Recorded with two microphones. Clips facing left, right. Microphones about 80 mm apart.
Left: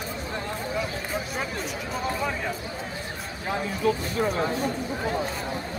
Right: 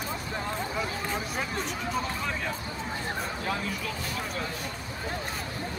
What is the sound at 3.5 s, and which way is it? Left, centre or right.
Speech, left.